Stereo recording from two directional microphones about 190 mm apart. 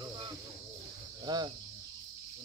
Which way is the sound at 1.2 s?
20° right (ahead or behind).